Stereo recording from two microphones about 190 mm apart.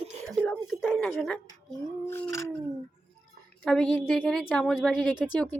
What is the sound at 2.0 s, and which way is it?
Dog, 15° left (ahead or behind).